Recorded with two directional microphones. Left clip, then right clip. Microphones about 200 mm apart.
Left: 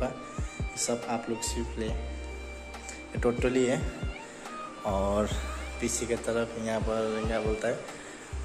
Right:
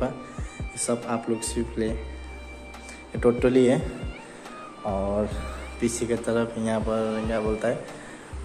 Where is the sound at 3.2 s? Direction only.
10° right (ahead or behind).